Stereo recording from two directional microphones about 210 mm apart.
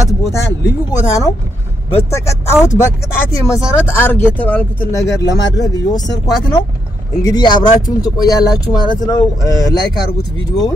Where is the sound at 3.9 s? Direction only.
10° left (ahead or behind).